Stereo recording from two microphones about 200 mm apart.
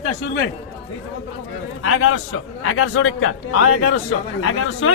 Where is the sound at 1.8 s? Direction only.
90° left.